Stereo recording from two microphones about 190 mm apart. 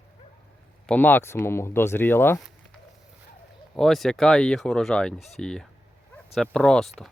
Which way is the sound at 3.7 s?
Centre (ahead or behind).